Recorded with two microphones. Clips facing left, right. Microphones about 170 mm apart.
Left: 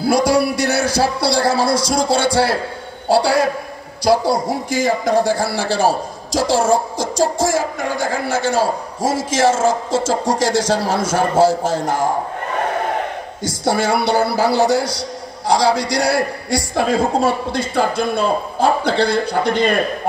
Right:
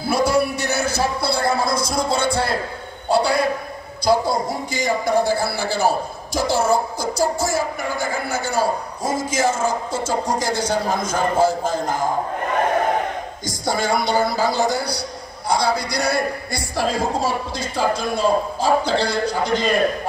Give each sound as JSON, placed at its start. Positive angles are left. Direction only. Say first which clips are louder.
{"t": 0.0, "sound": "a man's voice", "louder": "left 4 dB", "side_deg": 90}
{"t": 13.7, "sound": "a man's voice", "louder": "left 4 dB", "side_deg": 75}
{"t": 16.7, "sound": "a man's voice", "louder": "left 4 dB", "side_deg": 60}